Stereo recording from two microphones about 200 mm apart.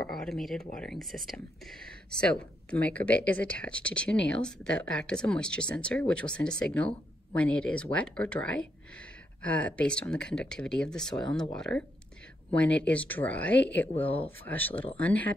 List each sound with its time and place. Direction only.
0.0 s speech: 5° left (ahead or behind)